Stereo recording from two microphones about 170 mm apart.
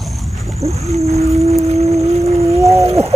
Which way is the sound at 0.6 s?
40° right (ahead or behind).